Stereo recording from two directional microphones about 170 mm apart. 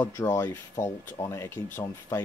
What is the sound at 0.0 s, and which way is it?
Speech, 15° left (ahead or behind).